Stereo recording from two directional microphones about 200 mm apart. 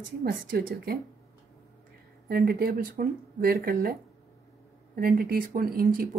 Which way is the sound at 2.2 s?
50° right (ahead or behind).